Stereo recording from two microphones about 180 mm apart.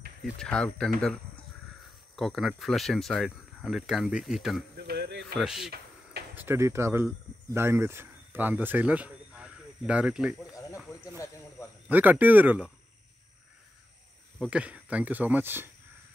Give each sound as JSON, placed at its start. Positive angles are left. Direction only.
{"t": 0.2, "sound": "speech", "side_deg": 5}
{"t": 4.7, "sound": "a sound", "side_deg": -60}
{"t": 5.4, "sound": "speech", "side_deg": -5}
{"t": 6.3, "sound": "speech", "side_deg": -15}
{"t": 11.9, "sound": "speech", "side_deg": -10}
{"t": 14.4, "sound": "speech", "side_deg": -5}